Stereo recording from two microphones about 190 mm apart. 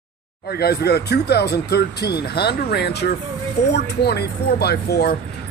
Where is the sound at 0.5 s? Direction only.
55° left (ahead or behind).